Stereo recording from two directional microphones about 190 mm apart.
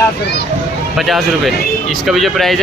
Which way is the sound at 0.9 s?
Centre (ahead or behind).